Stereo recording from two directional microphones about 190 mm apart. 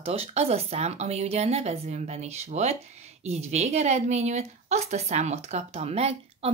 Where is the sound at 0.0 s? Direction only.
30° right (ahead or behind).